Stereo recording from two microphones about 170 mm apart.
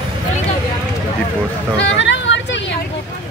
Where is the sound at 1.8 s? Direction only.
90° left.